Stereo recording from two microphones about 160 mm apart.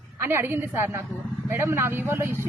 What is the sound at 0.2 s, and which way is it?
Speech, 15° right (ahead or behind).